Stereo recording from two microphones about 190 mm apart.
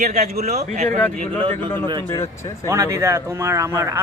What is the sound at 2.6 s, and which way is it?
Speech, 15° right (ahead or behind).